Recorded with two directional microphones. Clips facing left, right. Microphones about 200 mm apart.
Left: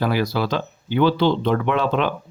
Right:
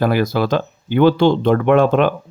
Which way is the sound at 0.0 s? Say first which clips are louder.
Right 5 dB; 50° right (ahead or behind).